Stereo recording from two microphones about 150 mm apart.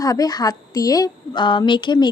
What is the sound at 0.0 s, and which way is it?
Speech, 25° left (ahead or behind).